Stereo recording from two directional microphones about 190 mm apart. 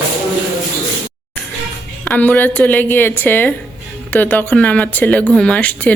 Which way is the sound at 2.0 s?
10° left (ahead or behind).